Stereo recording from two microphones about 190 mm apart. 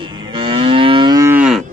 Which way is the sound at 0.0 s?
25° right (ahead or behind).